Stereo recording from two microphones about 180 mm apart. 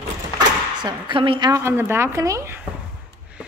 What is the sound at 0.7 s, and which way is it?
A woman's voice, 25° right (ahead or behind).